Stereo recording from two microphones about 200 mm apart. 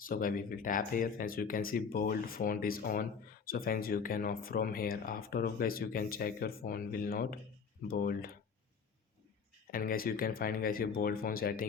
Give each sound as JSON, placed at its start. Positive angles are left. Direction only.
{"t": 0.0, "sound": "speech", "side_deg": 45}
{"t": 9.7, "sound": "speech", "side_deg": 45}